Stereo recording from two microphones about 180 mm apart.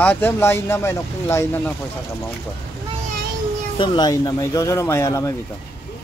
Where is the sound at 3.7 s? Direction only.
25° left (ahead or behind).